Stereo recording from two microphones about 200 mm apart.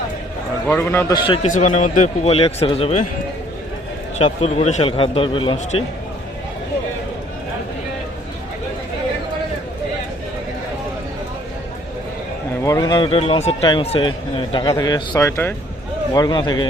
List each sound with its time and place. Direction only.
0.7 s a man's voice: 10° left (ahead or behind)
1.3 s speech: 35° left (ahead or behind)
4.2 s speech: 30° left (ahead or behind)
12.6 s speech: 15° left (ahead or behind)